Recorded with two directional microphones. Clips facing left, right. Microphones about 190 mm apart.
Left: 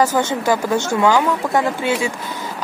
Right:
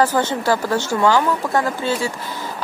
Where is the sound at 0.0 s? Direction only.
10° left (ahead or behind).